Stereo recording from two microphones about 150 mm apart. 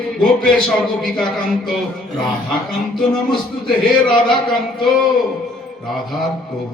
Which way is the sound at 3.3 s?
30° left (ahead or behind).